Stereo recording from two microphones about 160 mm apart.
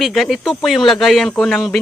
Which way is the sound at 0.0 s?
Centre (ahead or behind).